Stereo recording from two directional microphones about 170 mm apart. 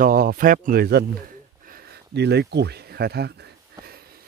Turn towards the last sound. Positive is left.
turn(degrees=-75)  # may be behind; listen again after turning